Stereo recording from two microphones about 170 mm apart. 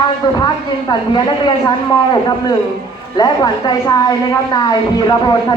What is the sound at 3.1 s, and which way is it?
A woman's voice, 25° left (ahead or behind).